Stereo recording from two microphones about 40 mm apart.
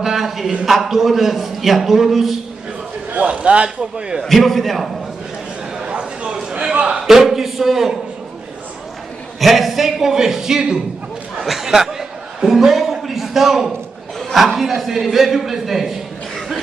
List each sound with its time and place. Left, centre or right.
0.0 s a sound: centre
0.7 s a man's voice: centre
3.1 s a man's voice: right
4.2 s a man's voice: centre
5.8 s a sound: right
6.7 s a man's voice: right
7.0 s a man's voice: centre
9.4 s a man's voice: centre